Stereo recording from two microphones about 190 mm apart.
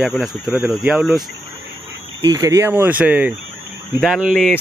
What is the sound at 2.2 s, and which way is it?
Speech, 15° right (ahead or behind).